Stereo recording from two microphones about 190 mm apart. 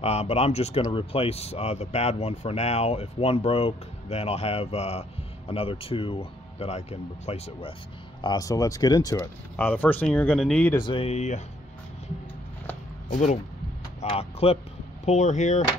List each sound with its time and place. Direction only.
0.0 s speech: 35° left (ahead or behind)
8.2 s speech: 20° left (ahead or behind)
10.8 s speech: 30° left (ahead or behind)
13.1 s speech: 40° left (ahead or behind)